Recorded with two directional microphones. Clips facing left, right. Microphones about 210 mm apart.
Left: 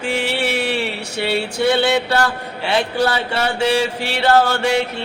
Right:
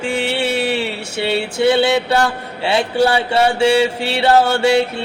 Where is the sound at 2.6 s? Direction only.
30° right (ahead or behind).